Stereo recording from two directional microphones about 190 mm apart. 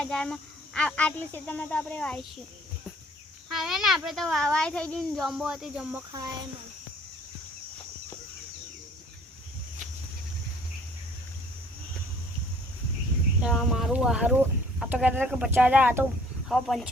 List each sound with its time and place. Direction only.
0.0 s speech: 5° left (ahead or behind)
3.5 s speech: centre (ahead or behind)
6.1 s speech: 20° right (ahead or behind)
13.4 s speech: centre (ahead or behind)
16.5 s speech: centre (ahead or behind)